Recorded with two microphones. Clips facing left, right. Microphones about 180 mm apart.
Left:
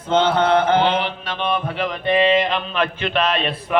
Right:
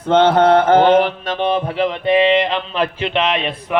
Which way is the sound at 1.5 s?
30° right (ahead or behind).